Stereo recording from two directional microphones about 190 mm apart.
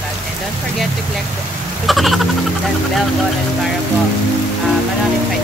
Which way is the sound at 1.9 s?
Centre (ahead or behind).